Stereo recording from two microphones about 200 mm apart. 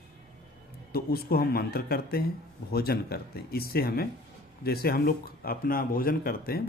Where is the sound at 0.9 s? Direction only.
50° left (ahead or behind).